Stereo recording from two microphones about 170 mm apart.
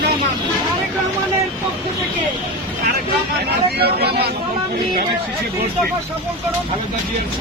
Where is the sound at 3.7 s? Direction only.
70° right (ahead or behind).